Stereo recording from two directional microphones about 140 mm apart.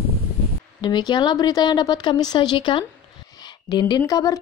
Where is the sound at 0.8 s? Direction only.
30° left (ahead or behind).